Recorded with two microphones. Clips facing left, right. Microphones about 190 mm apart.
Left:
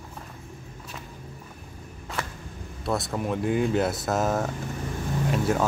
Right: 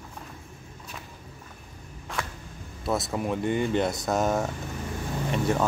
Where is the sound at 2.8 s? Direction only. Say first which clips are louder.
Even; centre (ahead or behind).